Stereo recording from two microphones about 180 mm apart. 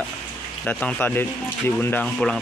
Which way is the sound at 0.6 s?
10° left (ahead or behind).